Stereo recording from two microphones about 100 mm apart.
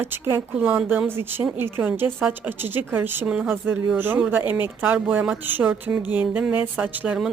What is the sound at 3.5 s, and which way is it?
A woman's voice, 20° right (ahead or behind).